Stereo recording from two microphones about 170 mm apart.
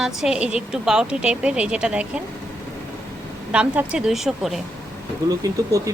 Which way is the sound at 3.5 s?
5° right (ahead or behind).